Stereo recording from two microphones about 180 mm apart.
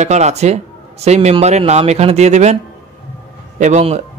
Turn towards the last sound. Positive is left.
turn(degrees=-40)  # may be behind; listen again after turning